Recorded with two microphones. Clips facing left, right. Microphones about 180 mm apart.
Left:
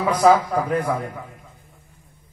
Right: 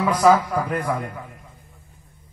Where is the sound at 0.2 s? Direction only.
25° left (ahead or behind).